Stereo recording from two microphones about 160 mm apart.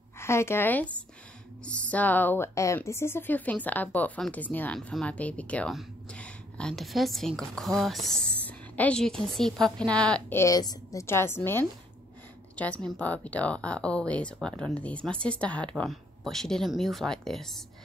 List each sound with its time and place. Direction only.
0.2 s a woman's voice: 15° left (ahead or behind)
10.4 s a woman's voice: 25° left (ahead or behind); by 17.6 s centre (ahead or behind)